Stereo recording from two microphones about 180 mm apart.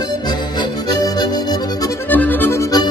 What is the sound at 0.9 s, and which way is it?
Accordion, 20° left (ahead or behind).